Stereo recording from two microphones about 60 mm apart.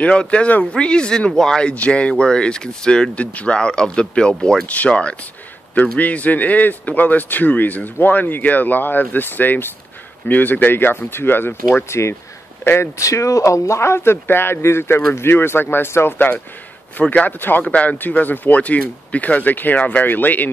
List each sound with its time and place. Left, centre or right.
0.0 s a man's voice: centre; by 12.9 s left
13.0 s speech: left
17.0 s a man's voice: left